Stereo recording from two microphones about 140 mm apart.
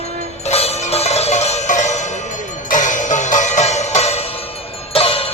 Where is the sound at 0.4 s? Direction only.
45° left (ahead or behind).